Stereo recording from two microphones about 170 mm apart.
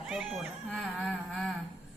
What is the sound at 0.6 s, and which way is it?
Humming, 5° left (ahead or behind).